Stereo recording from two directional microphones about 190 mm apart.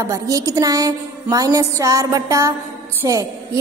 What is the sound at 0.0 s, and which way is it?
A woman's voice, 15° right (ahead or behind).